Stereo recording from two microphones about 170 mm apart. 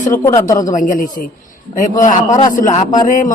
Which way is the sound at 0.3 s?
20° left (ahead or behind).